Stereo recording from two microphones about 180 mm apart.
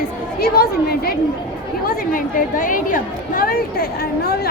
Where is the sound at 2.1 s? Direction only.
50° left (ahead or behind).